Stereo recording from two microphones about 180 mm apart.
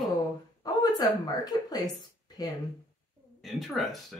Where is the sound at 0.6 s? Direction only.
20° left (ahead or behind).